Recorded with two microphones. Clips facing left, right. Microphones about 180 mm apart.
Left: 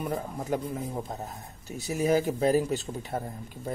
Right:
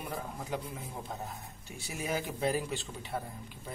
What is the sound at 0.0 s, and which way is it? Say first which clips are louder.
Speech: left 7 dB; 45° left (ahead or behind).